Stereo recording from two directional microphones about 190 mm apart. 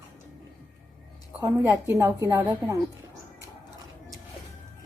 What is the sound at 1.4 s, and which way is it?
Speech, 15° right (ahead or behind).